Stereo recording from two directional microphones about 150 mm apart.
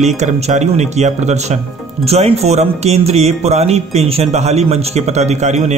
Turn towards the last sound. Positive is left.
turn(degrees=-50)  # may be behind; listen again after turning